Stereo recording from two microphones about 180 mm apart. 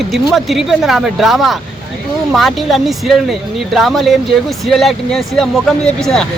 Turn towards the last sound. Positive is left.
turn(degrees=0)  # may be behind; listen again after turning